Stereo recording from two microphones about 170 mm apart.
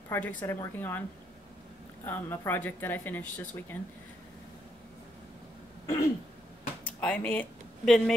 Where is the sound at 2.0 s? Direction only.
10° left (ahead or behind).